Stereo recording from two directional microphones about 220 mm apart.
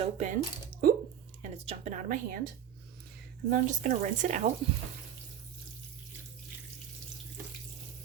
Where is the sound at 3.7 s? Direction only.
35° right (ahead or behind).